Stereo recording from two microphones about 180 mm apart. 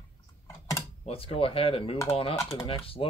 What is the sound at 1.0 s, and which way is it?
Speech, 30° left (ahead or behind).